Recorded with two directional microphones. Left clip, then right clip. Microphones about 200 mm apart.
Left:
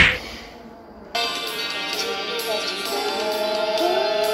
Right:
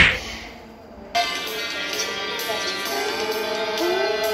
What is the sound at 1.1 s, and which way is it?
Music, 20° left (ahead or behind).